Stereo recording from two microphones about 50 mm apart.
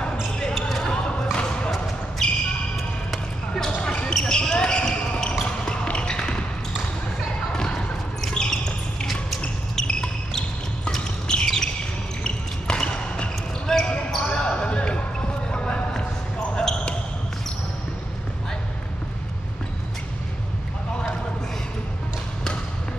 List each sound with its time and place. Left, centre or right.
0.0 s basketball bounce: centre
0.6 s basketball bounce: centre
0.9 s thump: centre
2.2 s basketball bounce: centre
3.7 s basketball bounce: left
5.4 s a sound: centre
8.2 s a sound: centre
9.0 s basketball bounce: centre
9.8 s a sound: centre
11.4 s basketball bounce: centre